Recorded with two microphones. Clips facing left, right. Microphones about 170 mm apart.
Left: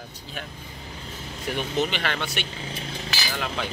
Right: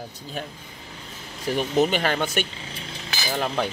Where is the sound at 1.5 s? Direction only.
40° right (ahead or behind).